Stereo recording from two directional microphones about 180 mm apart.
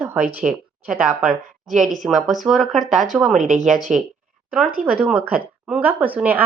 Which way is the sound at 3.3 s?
45° right (ahead or behind).